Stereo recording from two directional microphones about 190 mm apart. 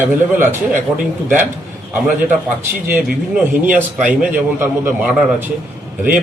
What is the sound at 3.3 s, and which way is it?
A man's voice, 10° right (ahead or behind).